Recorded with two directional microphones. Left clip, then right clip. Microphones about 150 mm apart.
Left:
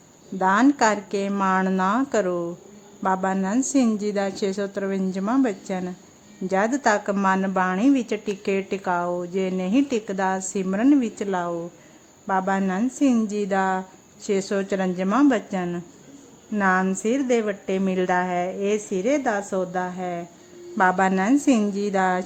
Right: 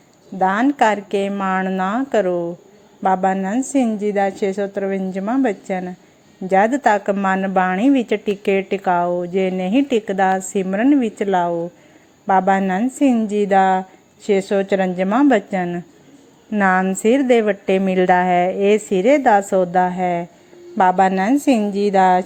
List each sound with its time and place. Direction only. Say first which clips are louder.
0.3 s a woman's voice: right 3 dB; 5° right (ahead or behind); by 12.8 s 20° right (ahead or behind)
13.0 s a woman's voice: right 5 dB; 10° right (ahead or behind)
21.9 s speech: right 9 dB; 15° right (ahead or behind)